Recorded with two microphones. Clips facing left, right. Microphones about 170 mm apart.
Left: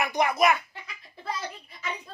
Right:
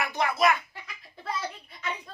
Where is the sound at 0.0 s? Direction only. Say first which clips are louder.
Left 2 dB; 15° left (ahead or behind).